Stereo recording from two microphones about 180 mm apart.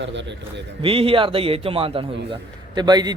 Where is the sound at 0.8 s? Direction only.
30° right (ahead or behind).